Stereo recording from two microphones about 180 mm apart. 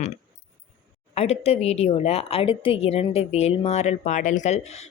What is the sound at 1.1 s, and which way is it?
A woman's voice, 35° left (ahead or behind).